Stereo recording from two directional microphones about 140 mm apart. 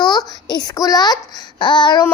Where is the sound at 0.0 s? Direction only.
30° left (ahead or behind).